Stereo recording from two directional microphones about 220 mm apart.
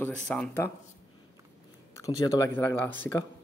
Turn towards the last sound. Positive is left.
turn(degrees=10)  # may be behind; listen again after turning